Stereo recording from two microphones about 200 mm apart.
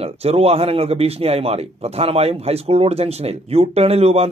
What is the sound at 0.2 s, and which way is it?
Speech, 30° right (ahead or behind).